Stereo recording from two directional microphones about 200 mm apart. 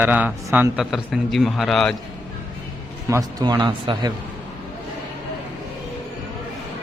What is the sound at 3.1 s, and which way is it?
Speech, 15° right (ahead or behind).